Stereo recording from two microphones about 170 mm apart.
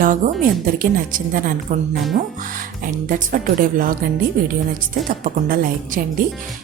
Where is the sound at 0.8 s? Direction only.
55° right (ahead or behind).